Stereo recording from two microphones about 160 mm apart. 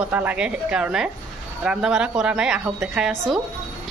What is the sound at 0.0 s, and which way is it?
A woman's voice, 10° right (ahead or behind).